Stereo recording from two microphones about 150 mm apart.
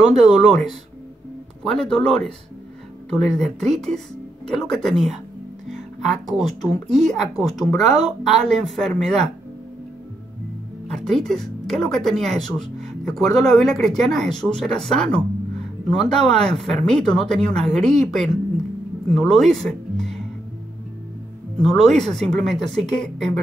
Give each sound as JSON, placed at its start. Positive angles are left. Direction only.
{"t": 0.2, "sound": "speech", "side_deg": 0}
{"t": 10.9, "sound": "speech", "side_deg": 0}
{"t": 21.5, "sound": "speech", "side_deg": 5}